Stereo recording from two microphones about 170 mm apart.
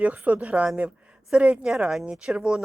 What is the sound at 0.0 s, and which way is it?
A woman's voice, 10° right (ahead or behind).